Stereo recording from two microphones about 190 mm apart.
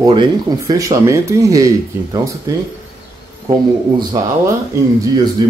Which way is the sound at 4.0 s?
20° right (ahead or behind).